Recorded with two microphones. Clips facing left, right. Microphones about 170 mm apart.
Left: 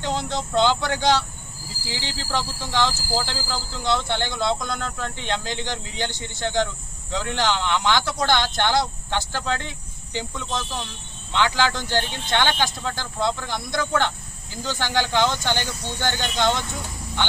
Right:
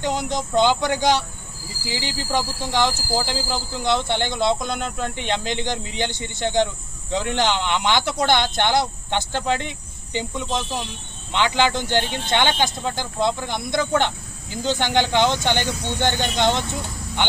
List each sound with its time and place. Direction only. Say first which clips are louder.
0.0 s speech: right 2 dB; 15° right (ahead or behind)